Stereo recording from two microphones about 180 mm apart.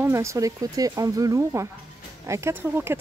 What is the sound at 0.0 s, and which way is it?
A woman's voice, 15° right (ahead or behind).